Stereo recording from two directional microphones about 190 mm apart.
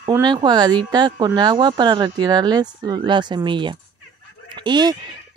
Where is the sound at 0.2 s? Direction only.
25° right (ahead or behind).